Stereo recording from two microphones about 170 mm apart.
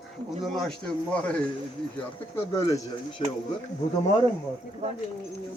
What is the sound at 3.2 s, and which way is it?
Speech, 30° left (ahead or behind).